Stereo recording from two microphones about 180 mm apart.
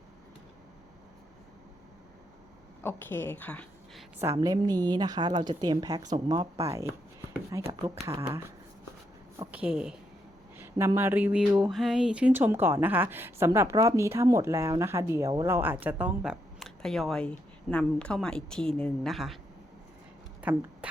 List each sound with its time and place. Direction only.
2.8 s a woman's voice: 10° left (ahead or behind)
4.2 s a woman's voice: 20° right (ahead or behind)
6.0 s speech: 40° right (ahead or behind)
6.2 s a woman's voice: 20° right (ahead or behind)
9.4 s a woman's voice: 10° right (ahead or behind)
20.4 s speech: 10° right (ahead or behind)